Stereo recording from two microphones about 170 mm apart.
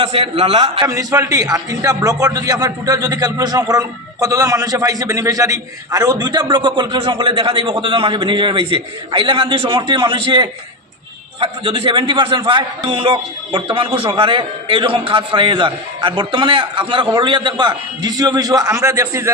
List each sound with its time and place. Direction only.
0.0 s a man's voice: 35° right (ahead or behind)
0.9 s a man's voice: 20° right (ahead or behind)